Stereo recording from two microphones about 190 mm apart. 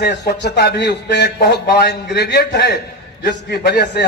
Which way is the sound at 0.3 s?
60° left (ahead or behind).